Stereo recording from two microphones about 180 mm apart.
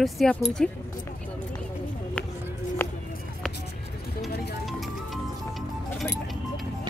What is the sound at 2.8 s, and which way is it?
Music, 15° left (ahead or behind).